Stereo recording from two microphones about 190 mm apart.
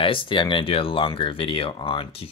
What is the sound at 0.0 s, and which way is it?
Speech, 25° left (ahead or behind).